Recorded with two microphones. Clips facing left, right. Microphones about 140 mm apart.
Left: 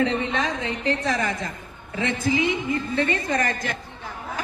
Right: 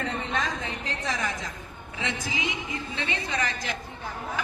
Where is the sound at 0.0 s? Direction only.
75° left (ahead or behind); by 3.8 s 50° left (ahead or behind).